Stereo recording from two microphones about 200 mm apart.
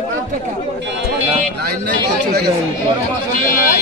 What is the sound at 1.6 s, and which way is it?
Speech, 55° right (ahead or behind).